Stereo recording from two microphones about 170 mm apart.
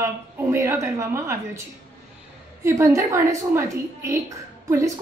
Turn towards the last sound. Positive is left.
turn(degrees=-20)  # may be behind; listen again after turning